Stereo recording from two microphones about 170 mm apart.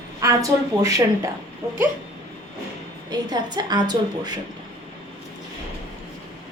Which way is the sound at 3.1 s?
25° right (ahead or behind).